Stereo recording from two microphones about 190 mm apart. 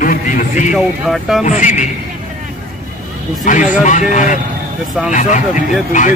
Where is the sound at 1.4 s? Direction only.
40° left (ahead or behind).